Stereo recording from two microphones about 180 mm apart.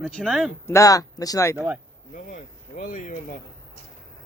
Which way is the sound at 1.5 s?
10° right (ahead or behind).